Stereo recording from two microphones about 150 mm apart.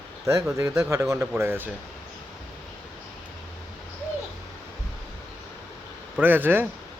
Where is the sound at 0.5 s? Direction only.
20° right (ahead or behind).